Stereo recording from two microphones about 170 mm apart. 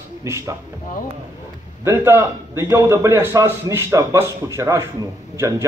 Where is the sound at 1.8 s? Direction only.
15° right (ahead or behind).